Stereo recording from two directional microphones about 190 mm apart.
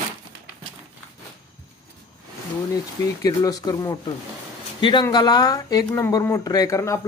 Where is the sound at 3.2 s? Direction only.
20° left (ahead or behind).